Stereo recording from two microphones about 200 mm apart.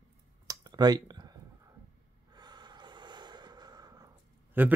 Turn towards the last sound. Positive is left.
turn(degrees=-15)  # may be behind; listen again after turning